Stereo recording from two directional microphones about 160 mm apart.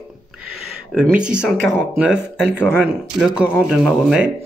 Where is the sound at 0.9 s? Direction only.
5° right (ahead or behind).